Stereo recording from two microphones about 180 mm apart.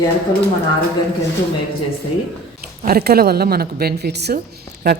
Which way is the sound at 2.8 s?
60° right (ahead or behind).